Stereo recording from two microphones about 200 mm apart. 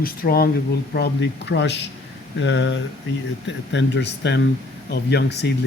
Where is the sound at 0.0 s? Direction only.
45° left (ahead or behind).